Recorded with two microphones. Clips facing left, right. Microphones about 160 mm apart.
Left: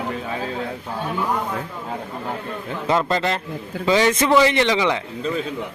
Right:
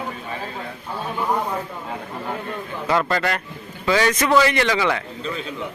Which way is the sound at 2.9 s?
25° left (ahead or behind).